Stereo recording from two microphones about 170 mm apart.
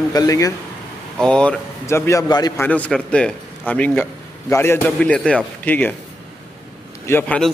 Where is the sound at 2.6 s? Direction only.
10° left (ahead or behind).